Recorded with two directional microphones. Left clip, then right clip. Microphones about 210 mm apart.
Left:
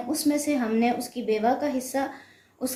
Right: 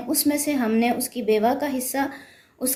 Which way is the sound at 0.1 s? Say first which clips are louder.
Right 2 dB; 50° right (ahead or behind).